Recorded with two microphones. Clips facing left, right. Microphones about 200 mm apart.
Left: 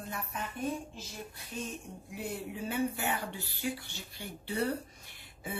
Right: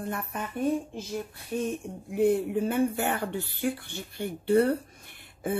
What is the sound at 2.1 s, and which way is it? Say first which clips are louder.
Speech: right 15 dB; 55° right (ahead or behind).